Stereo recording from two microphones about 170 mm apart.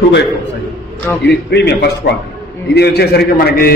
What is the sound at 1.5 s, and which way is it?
A man's voice, 80° left.